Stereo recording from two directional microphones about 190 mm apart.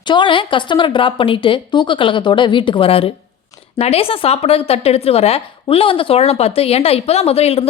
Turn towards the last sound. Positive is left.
turn(degrees=30)  # may be behind; listen again after turning